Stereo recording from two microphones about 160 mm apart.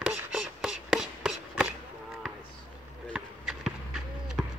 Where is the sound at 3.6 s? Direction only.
Centre (ahead or behind).